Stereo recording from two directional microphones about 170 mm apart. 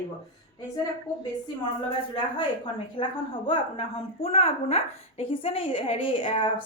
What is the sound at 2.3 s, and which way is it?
A woman's voice, 30° left (ahead or behind).